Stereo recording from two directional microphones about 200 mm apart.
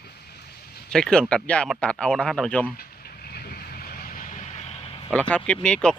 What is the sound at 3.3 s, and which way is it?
Vehicle, 50° left (ahead or behind).